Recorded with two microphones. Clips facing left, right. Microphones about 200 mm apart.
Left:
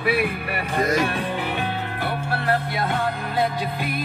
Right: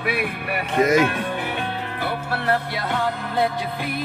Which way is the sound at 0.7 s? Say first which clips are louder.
Right 4 dB; 20° right (ahead or behind).